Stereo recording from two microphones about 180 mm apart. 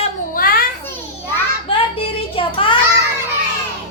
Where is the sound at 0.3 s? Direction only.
55° left (ahead or behind).